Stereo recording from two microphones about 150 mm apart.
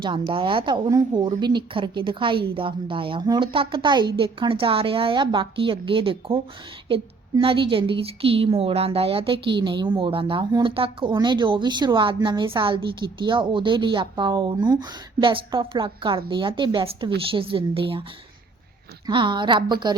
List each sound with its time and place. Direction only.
0.0 s a woman's voice: 30° right (ahead or behind)
19.0 s a woman's voice: 30° right (ahead or behind)